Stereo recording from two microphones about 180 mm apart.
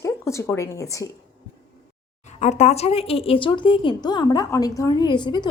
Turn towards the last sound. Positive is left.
turn(degrees=25)  # may be behind; listen again after turning